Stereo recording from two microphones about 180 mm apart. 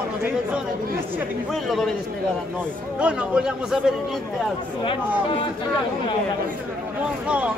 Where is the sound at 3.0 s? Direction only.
5° right (ahead or behind).